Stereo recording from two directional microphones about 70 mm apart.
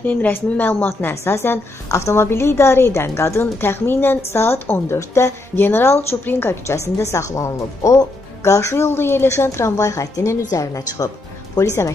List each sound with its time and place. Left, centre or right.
0.0 s a woman's voice: left
1.9 s a woman's voice: left
9.5 s a woman's voice: left